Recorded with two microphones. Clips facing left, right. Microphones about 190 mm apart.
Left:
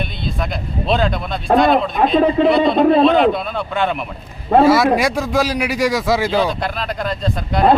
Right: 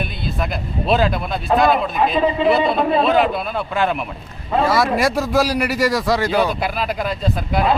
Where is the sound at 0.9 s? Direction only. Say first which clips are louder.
Right 1 dB; 5° right (ahead or behind).